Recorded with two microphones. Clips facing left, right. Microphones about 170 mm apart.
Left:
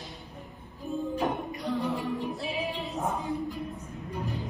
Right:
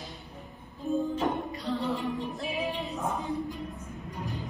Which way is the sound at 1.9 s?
20° right (ahead or behind).